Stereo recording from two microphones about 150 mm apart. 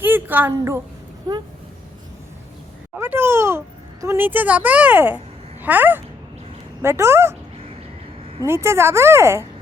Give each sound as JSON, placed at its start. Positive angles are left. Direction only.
{"t": 0.0, "sound": "a woman's voice", "side_deg": -15}
{"t": 2.9, "sound": "a sound", "side_deg": -15}
{"t": 4.0, "sound": "a woman's voice", "side_deg": -15}
{"t": 8.4, "sound": "a woman's voice", "side_deg": -15}